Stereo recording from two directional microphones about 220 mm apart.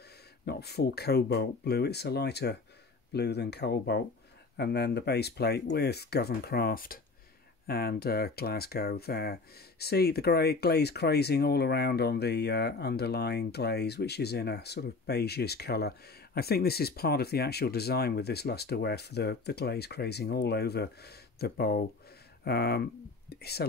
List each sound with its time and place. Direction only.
0.5 s speech: 45° left (ahead or behind)